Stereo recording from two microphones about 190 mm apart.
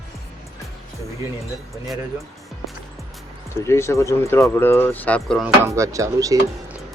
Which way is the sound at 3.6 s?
15° left (ahead or behind).